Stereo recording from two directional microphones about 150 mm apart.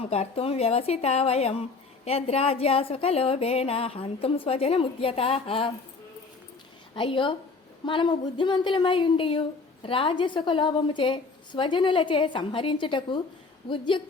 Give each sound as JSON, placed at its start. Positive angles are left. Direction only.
{"t": 0.0, "sound": "a woman's voice", "side_deg": 45}
{"t": 6.9, "sound": "a woman's voice", "side_deg": 35}